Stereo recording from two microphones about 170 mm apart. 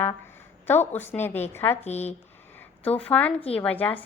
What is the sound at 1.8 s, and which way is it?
Speech, 40° left (ahead or behind).